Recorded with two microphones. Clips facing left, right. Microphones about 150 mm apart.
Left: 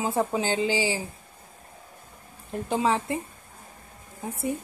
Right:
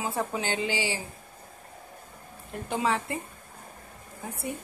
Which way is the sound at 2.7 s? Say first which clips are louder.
Left 3 dB; 30° left (ahead or behind).